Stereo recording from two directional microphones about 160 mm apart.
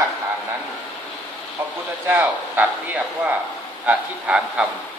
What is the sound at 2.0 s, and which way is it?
A man's voice, 10° right (ahead or behind).